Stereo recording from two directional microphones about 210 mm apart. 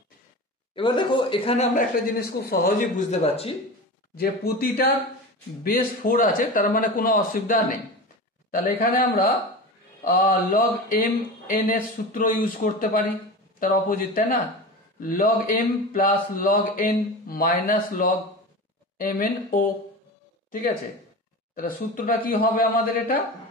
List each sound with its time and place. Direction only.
0.7 s speech: 20° left (ahead or behind)
2.1 s speech: 50° left (ahead or behind)
3.1 s speech: 30° left (ahead or behind)
4.2 s speech: 45° left (ahead or behind)
21.5 s speech: 40° left (ahead or behind)